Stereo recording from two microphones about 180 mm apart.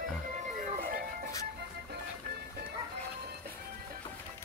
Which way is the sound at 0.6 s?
50° right (ahead or behind).